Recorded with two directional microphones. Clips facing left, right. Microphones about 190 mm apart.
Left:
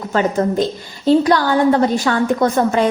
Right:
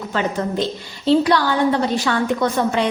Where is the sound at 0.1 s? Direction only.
45° left (ahead or behind).